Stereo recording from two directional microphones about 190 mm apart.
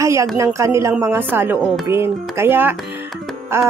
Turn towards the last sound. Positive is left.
turn(degrees=-15)  # may be behind; listen again after turning